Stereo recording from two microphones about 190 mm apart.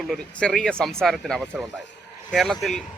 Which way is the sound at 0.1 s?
5° left (ahead or behind).